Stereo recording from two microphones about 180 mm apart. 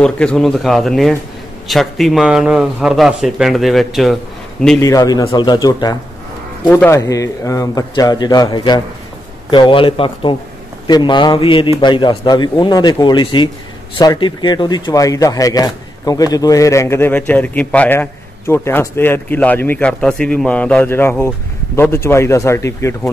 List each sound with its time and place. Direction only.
0.0 s a man's voice: 5° left (ahead or behind)
4.7 s speech: 20° left (ahead or behind)